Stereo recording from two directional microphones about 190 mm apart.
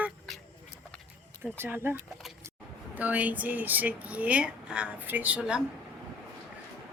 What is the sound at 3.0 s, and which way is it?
Speech, 10° right (ahead or behind).